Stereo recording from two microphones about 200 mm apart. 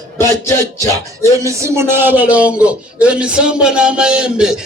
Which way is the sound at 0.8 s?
15° left (ahead or behind).